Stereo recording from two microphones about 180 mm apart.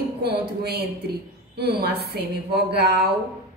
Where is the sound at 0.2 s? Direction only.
65° right (ahead or behind).